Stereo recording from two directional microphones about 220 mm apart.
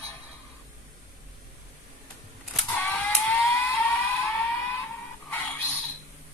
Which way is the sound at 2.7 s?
10° left (ahead or behind).